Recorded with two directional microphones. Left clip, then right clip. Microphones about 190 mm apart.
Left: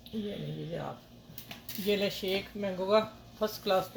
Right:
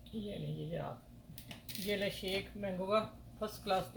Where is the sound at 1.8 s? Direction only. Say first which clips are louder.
Left 7 dB; 45° left (ahead or behind).